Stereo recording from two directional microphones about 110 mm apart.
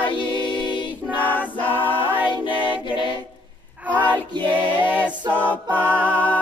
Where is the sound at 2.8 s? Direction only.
50° left (ahead or behind).